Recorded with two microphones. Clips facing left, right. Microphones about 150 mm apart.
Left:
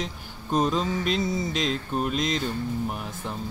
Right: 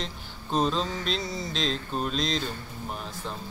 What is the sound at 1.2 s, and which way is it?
Speech, 20° left (ahead or behind).